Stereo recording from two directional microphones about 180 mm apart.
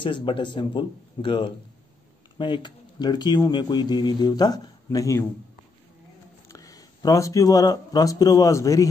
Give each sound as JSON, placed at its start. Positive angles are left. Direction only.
{"t": 0.0, "sound": "speech", "side_deg": 25}
{"t": 6.5, "sound": "speech", "side_deg": 20}